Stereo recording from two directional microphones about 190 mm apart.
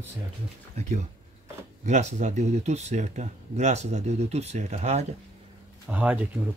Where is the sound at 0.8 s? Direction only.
40° right (ahead or behind).